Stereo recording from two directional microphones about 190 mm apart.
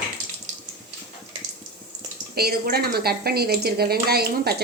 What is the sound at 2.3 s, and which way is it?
Speech, 55° right (ahead or behind).